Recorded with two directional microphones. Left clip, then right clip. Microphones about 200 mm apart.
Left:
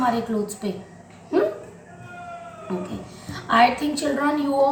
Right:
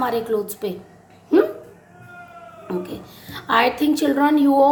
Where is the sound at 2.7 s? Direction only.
55° right (ahead or behind).